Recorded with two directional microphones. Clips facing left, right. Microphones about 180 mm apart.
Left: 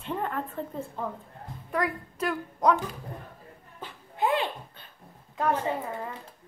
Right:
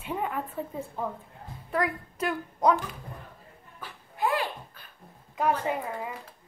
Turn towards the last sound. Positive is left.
turn(degrees=-10)  # may be behind; listen again after turning